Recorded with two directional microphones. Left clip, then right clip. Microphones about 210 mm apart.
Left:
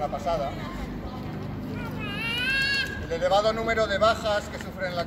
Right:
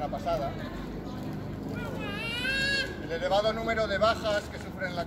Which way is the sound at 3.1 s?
5° left (ahead or behind).